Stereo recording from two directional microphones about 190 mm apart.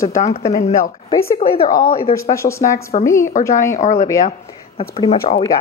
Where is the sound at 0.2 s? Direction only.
35° left (ahead or behind).